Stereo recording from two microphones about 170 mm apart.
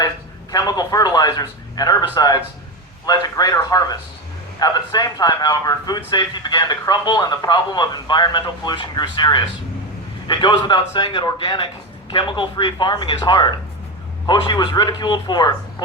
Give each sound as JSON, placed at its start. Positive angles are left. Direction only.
{"t": 0.5, "sound": "speech", "side_deg": 20}